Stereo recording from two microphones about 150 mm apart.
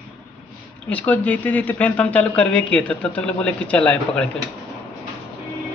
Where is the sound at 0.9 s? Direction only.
10° left (ahead or behind).